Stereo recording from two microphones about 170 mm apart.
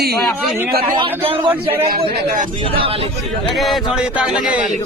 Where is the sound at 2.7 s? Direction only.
30° right (ahead or behind).